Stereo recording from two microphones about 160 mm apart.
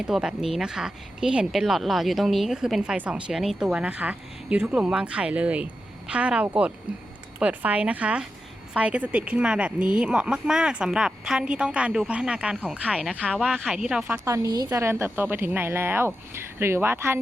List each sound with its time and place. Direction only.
0.0 s speech: 5° right (ahead or behind)
14.3 s speech: 20° right (ahead or behind)